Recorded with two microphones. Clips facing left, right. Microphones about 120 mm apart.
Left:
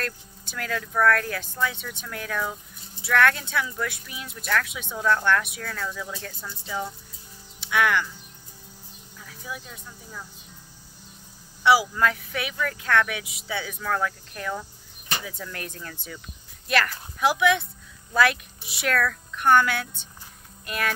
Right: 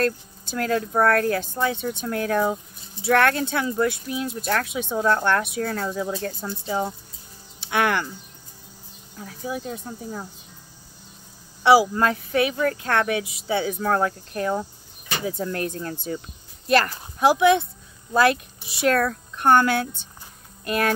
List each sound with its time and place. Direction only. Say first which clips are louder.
0.0 s speech: right 10 dB; 35° right (ahead or behind)
9.1 s speech: right 8 dB; 40° right (ahead or behind)
11.6 s speech: right 4 dB; 40° right (ahead or behind)